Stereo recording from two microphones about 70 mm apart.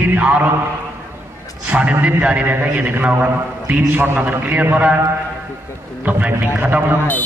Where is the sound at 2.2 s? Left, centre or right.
Centre.